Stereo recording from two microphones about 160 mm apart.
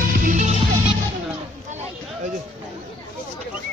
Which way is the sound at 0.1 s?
55° right (ahead or behind).